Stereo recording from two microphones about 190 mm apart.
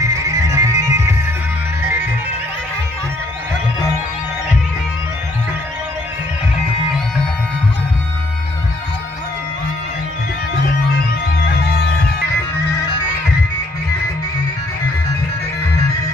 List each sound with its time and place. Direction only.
0.0 s music: 15° right (ahead or behind)